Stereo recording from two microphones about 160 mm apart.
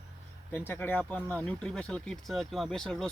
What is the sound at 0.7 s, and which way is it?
Speech, 10° left (ahead or behind).